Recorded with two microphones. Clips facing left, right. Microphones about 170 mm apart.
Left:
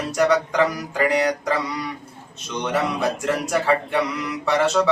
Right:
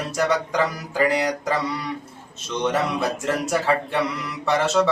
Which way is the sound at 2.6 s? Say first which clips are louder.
Even; centre (ahead or behind).